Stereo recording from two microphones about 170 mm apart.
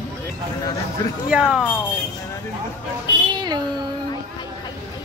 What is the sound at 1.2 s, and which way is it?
Speech, 5° right (ahead or behind).